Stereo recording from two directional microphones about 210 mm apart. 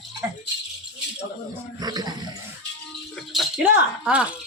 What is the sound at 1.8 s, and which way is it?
Speech, 20° right (ahead or behind).